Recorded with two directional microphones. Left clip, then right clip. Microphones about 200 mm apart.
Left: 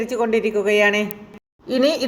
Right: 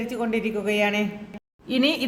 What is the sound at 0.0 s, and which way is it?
A man's voice, 30° left (ahead or behind).